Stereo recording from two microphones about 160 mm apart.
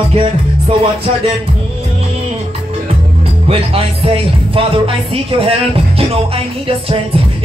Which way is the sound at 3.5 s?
35° right (ahead or behind).